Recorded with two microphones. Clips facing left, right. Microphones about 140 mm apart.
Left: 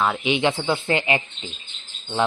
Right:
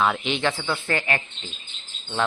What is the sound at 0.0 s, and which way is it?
Speech, 10° left (ahead or behind).